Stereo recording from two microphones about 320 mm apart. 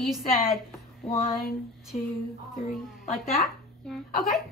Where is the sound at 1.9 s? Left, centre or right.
Left.